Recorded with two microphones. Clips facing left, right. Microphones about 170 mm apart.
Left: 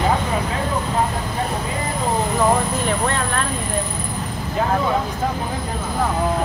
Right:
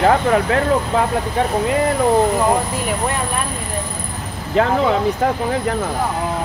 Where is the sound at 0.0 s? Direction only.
70° right (ahead or behind).